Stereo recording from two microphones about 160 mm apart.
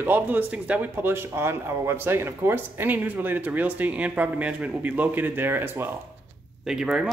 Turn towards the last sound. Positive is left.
turn(degrees=-5)  # may be behind; listen again after turning